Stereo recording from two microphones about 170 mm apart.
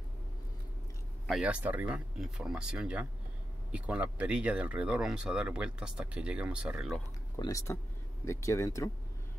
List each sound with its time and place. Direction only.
1.2 s speech: 5° right (ahead or behind)
7.3 s speech: 20° left (ahead or behind)